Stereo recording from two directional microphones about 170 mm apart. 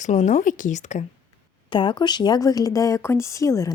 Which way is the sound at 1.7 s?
30° left (ahead or behind).